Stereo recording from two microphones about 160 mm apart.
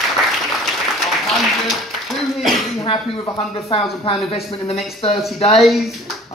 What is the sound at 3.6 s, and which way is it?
Speech, 35° left (ahead or behind).